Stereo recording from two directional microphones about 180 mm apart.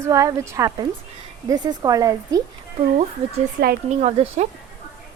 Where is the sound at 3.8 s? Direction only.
40° right (ahead or behind).